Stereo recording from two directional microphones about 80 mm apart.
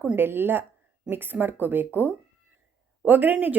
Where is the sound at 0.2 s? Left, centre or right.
Right.